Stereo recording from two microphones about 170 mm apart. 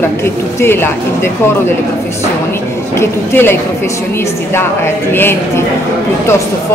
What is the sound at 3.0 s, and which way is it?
A woman's voice, 15° left (ahead or behind).